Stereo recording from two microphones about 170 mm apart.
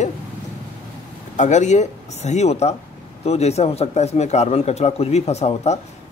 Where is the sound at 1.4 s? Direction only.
45° left (ahead or behind).